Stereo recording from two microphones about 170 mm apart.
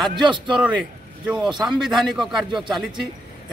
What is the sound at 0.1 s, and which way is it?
Speech, 25° right (ahead or behind).